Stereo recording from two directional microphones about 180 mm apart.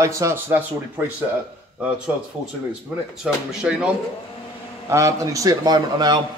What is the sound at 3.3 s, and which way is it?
Speech, 5° right (ahead or behind).